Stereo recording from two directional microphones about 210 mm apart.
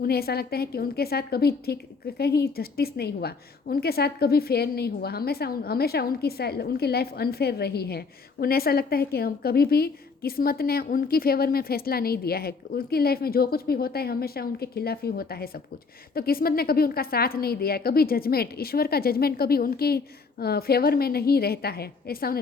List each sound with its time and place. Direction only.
0.0 s a woman's voice: 45° left (ahead or behind)